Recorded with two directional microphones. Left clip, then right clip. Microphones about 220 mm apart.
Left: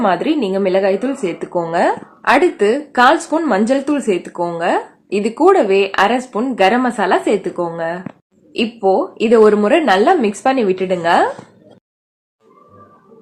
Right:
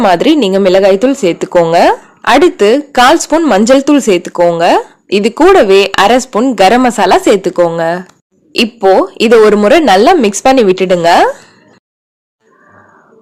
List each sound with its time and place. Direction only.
0.0 s a woman's voice: 45° right (ahead or behind)